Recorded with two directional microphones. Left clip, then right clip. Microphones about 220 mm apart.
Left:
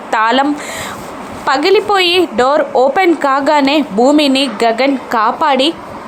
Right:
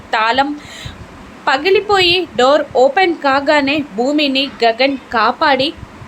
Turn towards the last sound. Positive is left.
turn(degrees=20)  # may be behind; listen again after turning